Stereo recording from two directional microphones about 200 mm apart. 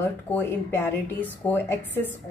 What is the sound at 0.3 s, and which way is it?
Speech, 10° left (ahead or behind).